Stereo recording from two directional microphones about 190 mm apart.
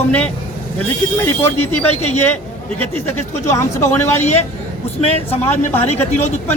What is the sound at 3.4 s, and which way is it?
Speech, 15° left (ahead or behind).